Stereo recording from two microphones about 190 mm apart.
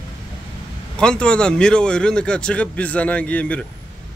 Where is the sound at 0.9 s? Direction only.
5° left (ahead or behind).